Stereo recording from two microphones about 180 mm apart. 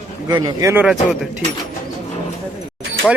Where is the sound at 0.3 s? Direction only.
20° right (ahead or behind).